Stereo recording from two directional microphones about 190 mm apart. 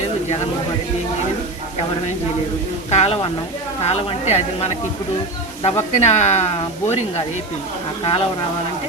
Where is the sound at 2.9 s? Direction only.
35° left (ahead or behind).